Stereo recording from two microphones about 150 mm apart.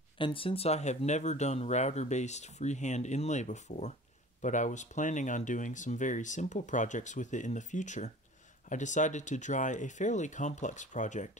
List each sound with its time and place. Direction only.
0.2 s speech: 35° left (ahead or behind); by 11.2 s 55° left (ahead or behind)